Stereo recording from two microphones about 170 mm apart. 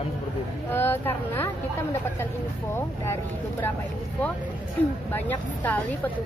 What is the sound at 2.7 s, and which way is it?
Speech, 15° left (ahead or behind).